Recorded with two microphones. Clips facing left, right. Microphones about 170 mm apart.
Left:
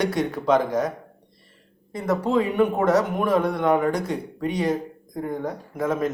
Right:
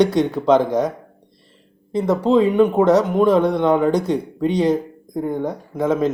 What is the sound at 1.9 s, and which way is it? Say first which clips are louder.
Speech: right 6 dB; 20° right (ahead or behind).